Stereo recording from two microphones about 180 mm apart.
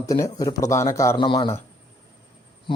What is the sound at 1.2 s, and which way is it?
Speech, 30° left (ahead or behind).